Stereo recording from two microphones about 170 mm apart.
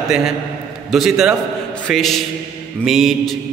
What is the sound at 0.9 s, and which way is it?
A man's voice, centre (ahead or behind).